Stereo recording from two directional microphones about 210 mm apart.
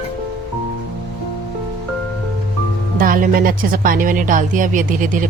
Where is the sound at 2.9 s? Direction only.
40° right (ahead or behind).